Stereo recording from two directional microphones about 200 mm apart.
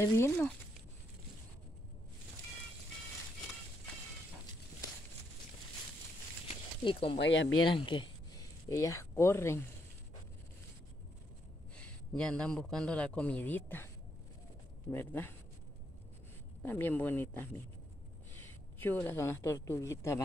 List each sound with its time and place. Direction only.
0.0 s speech: 10° left (ahead or behind)
6.8 s speech: 25° left (ahead or behind)
7.2 s speech: 70° left (ahead or behind)
7.7 s speech: 25° left (ahead or behind)
11.7 s a man's voice: 5° left (ahead or behind)
14.9 s speech: 10° left (ahead or behind)
16.6 s speech: 10° left (ahead or behind)